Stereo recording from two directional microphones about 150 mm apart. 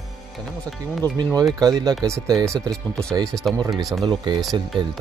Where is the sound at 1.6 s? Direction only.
25° right (ahead or behind).